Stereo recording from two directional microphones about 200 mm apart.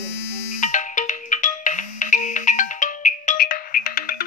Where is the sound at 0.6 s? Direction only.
40° left (ahead or behind).